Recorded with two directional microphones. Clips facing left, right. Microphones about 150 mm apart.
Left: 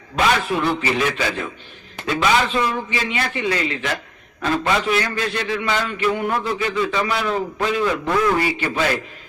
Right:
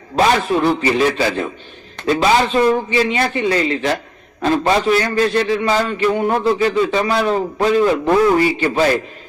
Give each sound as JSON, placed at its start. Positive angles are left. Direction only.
{"t": 0.2, "sound": "a man's voice", "side_deg": -35}